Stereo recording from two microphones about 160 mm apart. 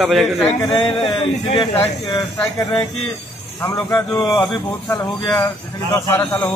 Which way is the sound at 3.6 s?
15° left (ahead or behind).